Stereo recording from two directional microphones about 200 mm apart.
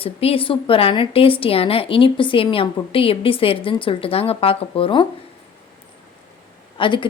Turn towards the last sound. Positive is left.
turn(degrees=25)  # may be behind; listen again after turning